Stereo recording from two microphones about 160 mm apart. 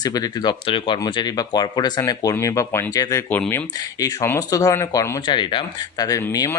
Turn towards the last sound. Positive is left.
turn(degrees=20)  # may be behind; listen again after turning